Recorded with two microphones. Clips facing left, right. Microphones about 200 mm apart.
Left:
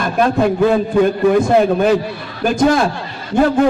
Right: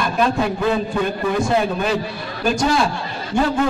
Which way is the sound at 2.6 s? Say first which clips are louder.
Left 7 dB; 55° left (ahead or behind).